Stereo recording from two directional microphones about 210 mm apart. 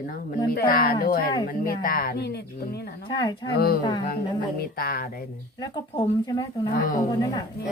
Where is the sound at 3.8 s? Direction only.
20° left (ahead or behind).